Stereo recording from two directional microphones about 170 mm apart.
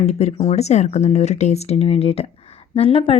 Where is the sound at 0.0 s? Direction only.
40° left (ahead or behind).